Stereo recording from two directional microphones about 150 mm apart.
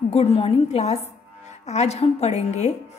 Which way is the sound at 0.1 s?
45° left (ahead or behind).